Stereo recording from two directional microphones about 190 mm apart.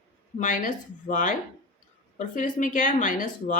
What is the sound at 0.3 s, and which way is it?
Speech, 40° left (ahead or behind).